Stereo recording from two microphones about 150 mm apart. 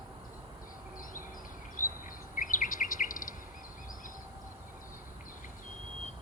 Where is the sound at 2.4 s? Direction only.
60° left (ahead or behind).